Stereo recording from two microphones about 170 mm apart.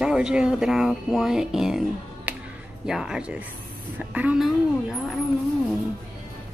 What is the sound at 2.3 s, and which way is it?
Music, 10° right (ahead or behind).